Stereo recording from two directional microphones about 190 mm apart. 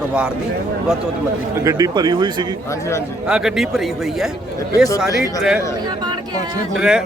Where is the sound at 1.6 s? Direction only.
20° right (ahead or behind).